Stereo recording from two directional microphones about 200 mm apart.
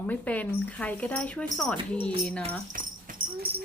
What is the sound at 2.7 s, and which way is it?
Dog, 40° right (ahead or behind).